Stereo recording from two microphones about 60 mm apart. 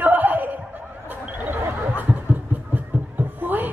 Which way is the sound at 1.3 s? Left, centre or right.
Right.